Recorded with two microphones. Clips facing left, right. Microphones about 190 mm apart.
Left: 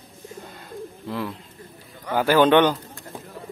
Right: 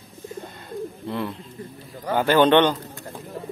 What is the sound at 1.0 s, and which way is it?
A man's voice, centre (ahead or behind).